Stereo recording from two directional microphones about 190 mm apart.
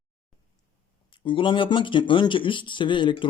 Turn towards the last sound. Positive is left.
turn(degrees=25)  # may be behind; listen again after turning